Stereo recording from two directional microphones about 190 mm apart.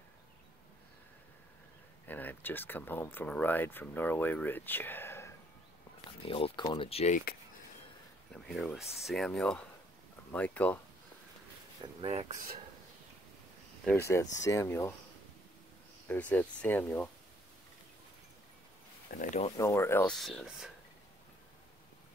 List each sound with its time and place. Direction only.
2.0 s speech: 10° left (ahead or behind)
6.2 s speech: 30° left (ahead or behind)
8.5 s speech: centre (ahead or behind)
11.8 s speech: 30° right (ahead or behind)
13.8 s speech: 15° left (ahead or behind)
16.1 s speech: 10° left (ahead or behind)
19.0 s speech: 45° left (ahead or behind)
19.5 s speech: 15° left (ahead or behind)
20.2 s speech: centre (ahead or behind)